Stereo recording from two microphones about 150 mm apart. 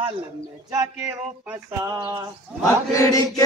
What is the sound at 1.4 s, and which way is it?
Speech, 10° right (ahead or behind).